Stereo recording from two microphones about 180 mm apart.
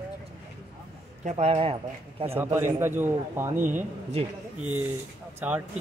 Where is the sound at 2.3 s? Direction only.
15° right (ahead or behind).